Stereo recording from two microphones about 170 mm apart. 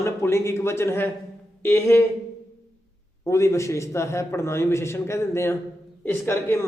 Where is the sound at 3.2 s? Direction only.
15° left (ahead or behind).